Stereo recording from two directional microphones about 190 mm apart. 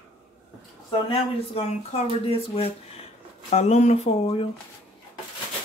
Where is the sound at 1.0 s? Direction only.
35° left (ahead or behind).